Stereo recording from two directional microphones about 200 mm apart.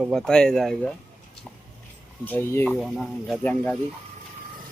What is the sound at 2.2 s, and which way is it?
Speech, 10° left (ahead or behind).